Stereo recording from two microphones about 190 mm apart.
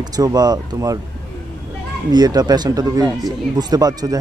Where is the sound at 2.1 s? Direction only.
20° right (ahead or behind).